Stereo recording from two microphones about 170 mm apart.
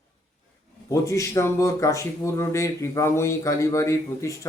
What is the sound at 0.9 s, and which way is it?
A man's voice, 15° left (ahead or behind).